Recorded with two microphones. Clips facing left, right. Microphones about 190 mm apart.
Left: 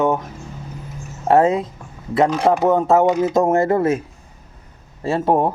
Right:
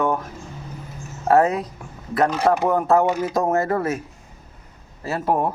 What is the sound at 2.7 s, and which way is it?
Speech, 25° left (ahead or behind).